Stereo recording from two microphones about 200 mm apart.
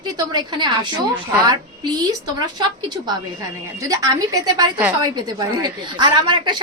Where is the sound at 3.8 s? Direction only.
15° right (ahead or behind).